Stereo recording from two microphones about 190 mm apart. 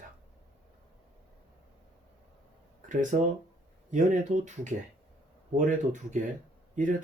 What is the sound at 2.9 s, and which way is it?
Speech, 40° right (ahead or behind).